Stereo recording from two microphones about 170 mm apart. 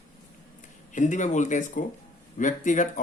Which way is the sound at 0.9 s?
45° left (ahead or behind).